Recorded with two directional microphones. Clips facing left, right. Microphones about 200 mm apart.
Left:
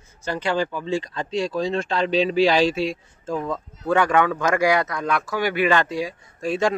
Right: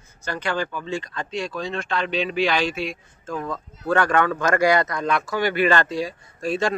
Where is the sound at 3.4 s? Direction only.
15° left (ahead or behind).